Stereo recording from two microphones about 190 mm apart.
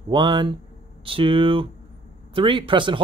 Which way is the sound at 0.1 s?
25° right (ahead or behind).